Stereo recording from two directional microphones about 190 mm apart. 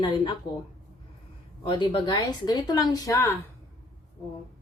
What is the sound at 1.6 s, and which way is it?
Speech, 25° left (ahead or behind).